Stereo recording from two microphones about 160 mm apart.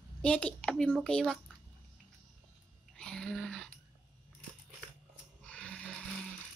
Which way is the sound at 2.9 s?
5° left (ahead or behind).